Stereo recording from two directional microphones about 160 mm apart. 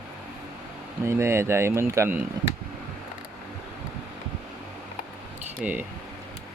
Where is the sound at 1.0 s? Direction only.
15° right (ahead or behind).